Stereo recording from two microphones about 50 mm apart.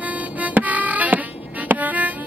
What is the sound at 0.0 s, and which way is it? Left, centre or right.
Music, right.